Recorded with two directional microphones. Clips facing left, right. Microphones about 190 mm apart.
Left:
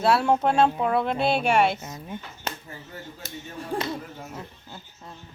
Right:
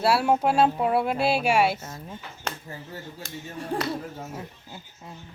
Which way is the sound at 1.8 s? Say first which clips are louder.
Left 1 dB; 10° left (ahead or behind).